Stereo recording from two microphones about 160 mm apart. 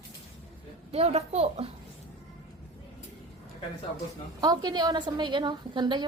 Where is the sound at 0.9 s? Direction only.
40° right (ahead or behind).